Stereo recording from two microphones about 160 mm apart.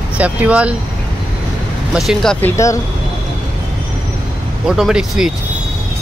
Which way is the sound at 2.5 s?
20° left (ahead or behind).